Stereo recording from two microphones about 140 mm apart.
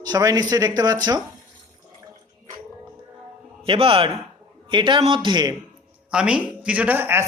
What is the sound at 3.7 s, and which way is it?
Speech, 40° right (ahead or behind).